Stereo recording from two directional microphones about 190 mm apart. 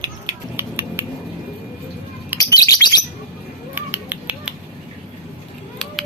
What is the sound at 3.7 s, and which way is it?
Finger snapping, 10° right (ahead or behind).